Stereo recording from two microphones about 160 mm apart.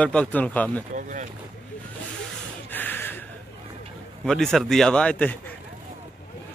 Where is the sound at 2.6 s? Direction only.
10° left (ahead or behind).